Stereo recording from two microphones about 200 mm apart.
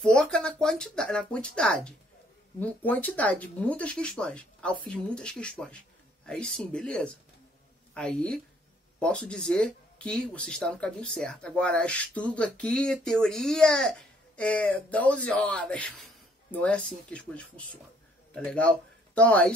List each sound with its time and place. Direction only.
0.0 s speech: 5° left (ahead or behind)